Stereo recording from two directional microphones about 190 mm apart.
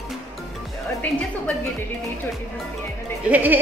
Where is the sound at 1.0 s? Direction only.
10° left (ahead or behind).